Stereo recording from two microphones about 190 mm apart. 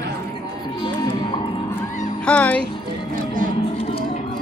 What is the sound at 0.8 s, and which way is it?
Music, 25° left (ahead or behind).